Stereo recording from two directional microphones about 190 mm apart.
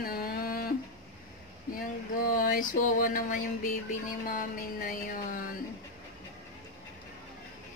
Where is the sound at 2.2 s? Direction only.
50° left (ahead or behind).